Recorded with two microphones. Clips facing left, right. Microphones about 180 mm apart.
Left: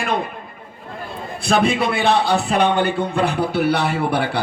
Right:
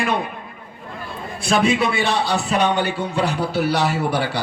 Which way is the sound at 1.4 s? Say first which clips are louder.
Even; 60° left (ahead or behind).